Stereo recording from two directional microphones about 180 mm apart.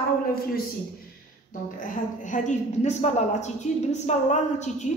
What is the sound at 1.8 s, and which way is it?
A woman's voice, 45° left (ahead or behind).